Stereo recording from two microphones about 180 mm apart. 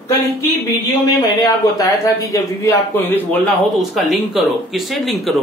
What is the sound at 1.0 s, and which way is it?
A man's voice, 20° left (ahead or behind).